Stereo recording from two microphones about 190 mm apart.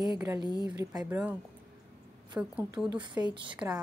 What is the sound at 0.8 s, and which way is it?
Speech, 20° right (ahead or behind).